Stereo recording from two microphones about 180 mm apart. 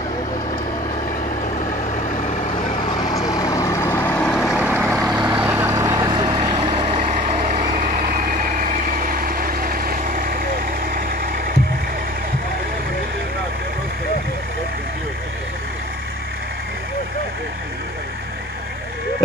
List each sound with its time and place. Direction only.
3.1 s vehicle: 20° left (ahead or behind)
4.6 s vehicle: 10° right (ahead or behind); by 7.2 s 30° right (ahead or behind)
7.2 s vehicle: 45° right (ahead or behind)